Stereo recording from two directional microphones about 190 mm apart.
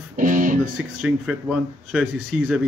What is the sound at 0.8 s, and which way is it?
Speech, 5° right (ahead or behind).